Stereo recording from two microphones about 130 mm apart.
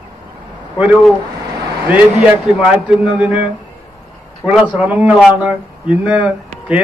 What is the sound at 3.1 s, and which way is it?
Speech, 10° right (ahead or behind).